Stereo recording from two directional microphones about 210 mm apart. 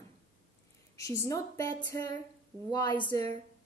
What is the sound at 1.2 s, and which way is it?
Speech, 15° left (ahead or behind).